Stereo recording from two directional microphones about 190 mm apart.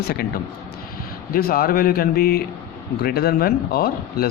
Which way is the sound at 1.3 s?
50° left (ahead or behind).